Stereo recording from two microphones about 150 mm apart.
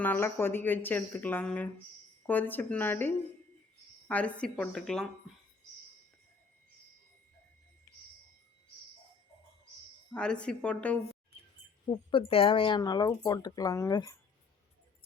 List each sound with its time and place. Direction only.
0.0 s speech: 15° left (ahead or behind)
10.1 s speech: 5° left (ahead or behind)
11.9 s speech: 35° left (ahead or behind)